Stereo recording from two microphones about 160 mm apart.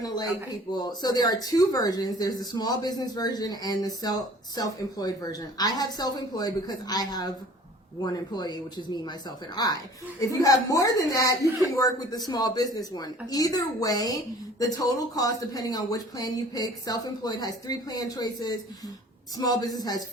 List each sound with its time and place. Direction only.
0.8 s speech: 25° left (ahead or behind)